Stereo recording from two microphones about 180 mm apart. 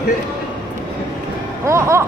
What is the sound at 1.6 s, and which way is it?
Speech, 15° right (ahead or behind).